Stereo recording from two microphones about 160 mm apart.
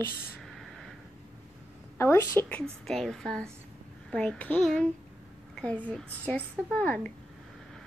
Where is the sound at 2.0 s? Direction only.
15° left (ahead or behind).